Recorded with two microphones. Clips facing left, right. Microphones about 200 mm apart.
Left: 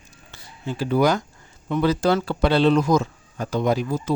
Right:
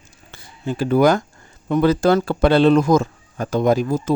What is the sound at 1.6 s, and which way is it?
Speech, 50° right (ahead or behind).